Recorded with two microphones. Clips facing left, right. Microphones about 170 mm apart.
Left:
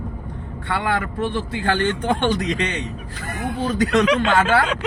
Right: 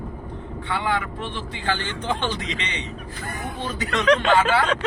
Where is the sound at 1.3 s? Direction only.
50° left (ahead or behind).